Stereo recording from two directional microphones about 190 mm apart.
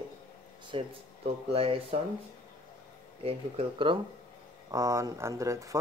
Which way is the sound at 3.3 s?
30° right (ahead or behind).